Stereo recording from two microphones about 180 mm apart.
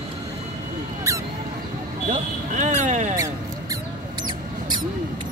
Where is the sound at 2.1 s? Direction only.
40° right (ahead or behind).